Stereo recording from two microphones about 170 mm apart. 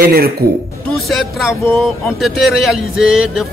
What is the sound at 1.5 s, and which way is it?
Speech, 15° left (ahead or behind).